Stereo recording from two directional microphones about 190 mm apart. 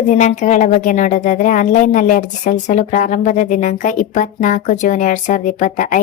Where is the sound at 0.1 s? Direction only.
40° left (ahead or behind).